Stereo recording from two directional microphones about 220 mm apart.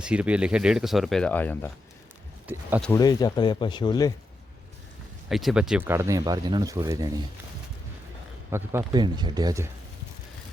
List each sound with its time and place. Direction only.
0.0 s speech: 5° right (ahead or behind)
2.5 s speech: 10° right (ahead or behind)
2.8 s speech: 15° left (ahead or behind)
5.3 s speech: centre (ahead or behind)
8.4 s speech: 10° right (ahead or behind)